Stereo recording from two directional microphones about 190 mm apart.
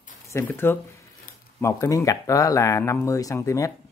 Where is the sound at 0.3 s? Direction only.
15° left (ahead or behind).